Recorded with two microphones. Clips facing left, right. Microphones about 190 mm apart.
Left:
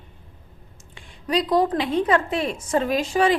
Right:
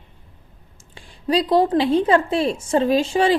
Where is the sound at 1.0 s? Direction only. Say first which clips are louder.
Right 3 dB; 30° right (ahead or behind).